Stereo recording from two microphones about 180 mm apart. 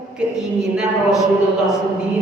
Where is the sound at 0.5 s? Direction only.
5° right (ahead or behind).